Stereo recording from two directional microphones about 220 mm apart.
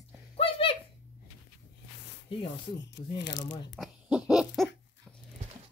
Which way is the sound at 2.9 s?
55° left (ahead or behind).